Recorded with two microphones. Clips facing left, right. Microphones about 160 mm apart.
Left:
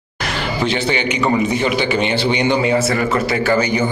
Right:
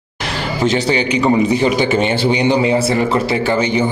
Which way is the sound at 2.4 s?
30° right (ahead or behind).